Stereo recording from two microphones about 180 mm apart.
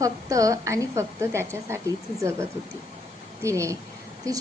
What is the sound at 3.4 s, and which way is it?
Speech, 15° right (ahead or behind).